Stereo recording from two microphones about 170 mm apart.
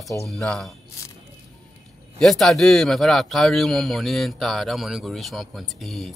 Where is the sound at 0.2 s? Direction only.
Centre (ahead or behind).